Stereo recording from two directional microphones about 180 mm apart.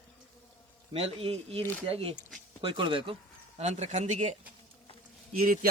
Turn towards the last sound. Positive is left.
turn(degrees=-50)  # may be behind; listen again after turning